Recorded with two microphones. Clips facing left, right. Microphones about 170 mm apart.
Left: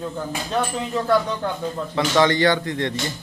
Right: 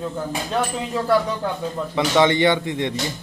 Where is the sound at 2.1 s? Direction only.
20° right (ahead or behind).